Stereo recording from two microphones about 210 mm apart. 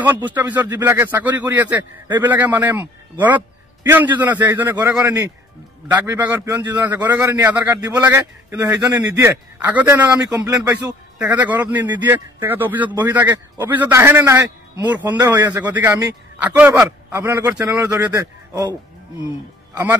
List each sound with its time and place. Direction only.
0.0 s a man's voice: 10° right (ahead or behind)
10.6 s a man's voice: 15° right (ahead or behind)
15.6 s a man's voice: 10° right (ahead or behind)